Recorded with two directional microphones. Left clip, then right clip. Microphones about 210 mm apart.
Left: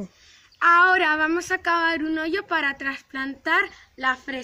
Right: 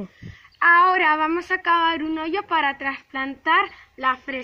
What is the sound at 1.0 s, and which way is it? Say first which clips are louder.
A woman's voice: right 2 dB; 10° left (ahead or behind).